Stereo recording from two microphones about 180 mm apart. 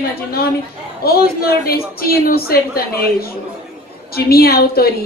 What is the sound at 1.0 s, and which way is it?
Speech, 60° left (ahead or behind).